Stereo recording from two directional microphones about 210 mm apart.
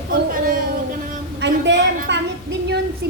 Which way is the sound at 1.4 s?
55° right (ahead or behind).